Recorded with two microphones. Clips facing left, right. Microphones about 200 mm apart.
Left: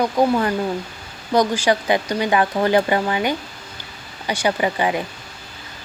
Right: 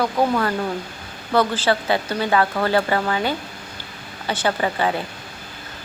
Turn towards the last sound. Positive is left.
turn(degrees=15)  # may be behind; listen again after turning